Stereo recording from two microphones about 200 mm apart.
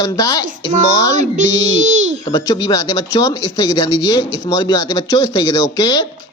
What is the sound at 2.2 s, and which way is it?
A man's voice, 20° left (ahead or behind).